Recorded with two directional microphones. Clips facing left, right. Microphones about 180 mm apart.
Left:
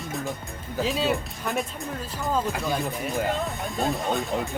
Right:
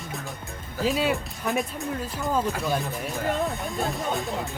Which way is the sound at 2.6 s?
Centre (ahead or behind).